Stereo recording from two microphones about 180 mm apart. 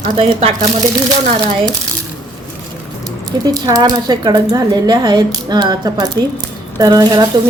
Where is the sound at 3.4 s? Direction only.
20° right (ahead or behind).